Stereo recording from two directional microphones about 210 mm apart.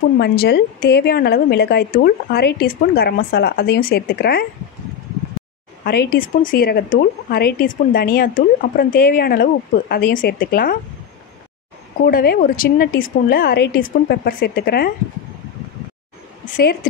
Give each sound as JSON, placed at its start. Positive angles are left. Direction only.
{"t": 0.2, "sound": "speech", "side_deg": 50}
{"t": 5.9, "sound": "speech", "side_deg": 50}
{"t": 12.1, "sound": "speech", "side_deg": 45}
{"t": 16.5, "sound": "speech", "side_deg": 45}